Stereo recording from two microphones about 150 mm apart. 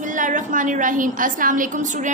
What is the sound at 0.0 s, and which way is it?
A woman's voice, 60° right (ahead or behind).